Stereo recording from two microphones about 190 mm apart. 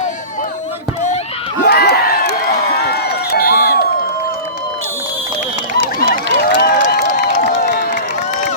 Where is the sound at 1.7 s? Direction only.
60° left (ahead or behind).